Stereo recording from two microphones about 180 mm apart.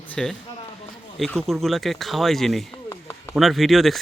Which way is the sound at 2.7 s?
15° left (ahead or behind).